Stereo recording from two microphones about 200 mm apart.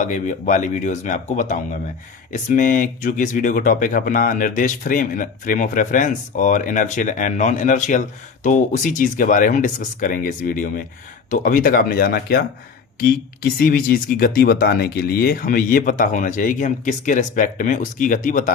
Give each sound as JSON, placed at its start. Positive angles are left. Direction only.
{"t": 0.0, "sound": "speech", "side_deg": 40}